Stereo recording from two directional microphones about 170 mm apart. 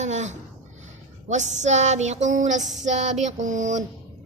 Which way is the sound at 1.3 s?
45° right (ahead or behind).